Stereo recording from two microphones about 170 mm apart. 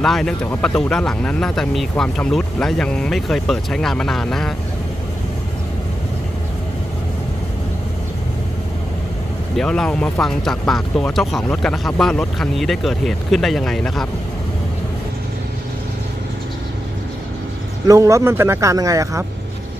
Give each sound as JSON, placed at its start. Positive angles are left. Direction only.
{"t": 0.0, "sound": "speech", "side_deg": 5}
{"t": 9.6, "sound": "speech", "side_deg": 5}
{"t": 17.8, "sound": "speech", "side_deg": -20}